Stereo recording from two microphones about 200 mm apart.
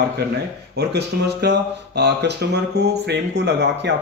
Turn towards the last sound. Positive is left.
turn(degrees=-60)  # may be behind; listen again after turning